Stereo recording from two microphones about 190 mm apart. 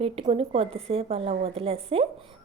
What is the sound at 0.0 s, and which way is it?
A woman's voice, 30° right (ahead or behind).